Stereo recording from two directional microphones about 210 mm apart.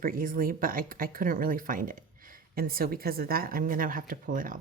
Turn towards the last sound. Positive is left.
turn(degrees=-40)  # may be behind; listen again after turning